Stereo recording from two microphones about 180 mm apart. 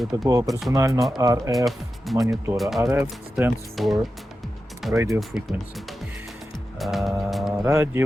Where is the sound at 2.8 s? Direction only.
10° right (ahead or behind).